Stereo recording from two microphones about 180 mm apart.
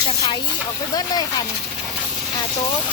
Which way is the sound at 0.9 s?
20° left (ahead or behind).